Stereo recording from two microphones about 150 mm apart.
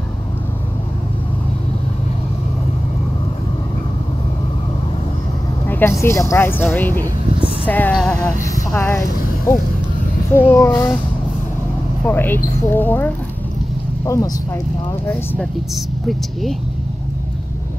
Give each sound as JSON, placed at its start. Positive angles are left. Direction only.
{"t": 5.7, "sound": "speech", "side_deg": 15}
{"t": 8.1, "sound": "speech", "side_deg": 20}
{"t": 10.3, "sound": "speech", "side_deg": 15}
{"t": 12.1, "sound": "speech", "side_deg": 15}
{"t": 15.7, "sound": "speech", "side_deg": 0}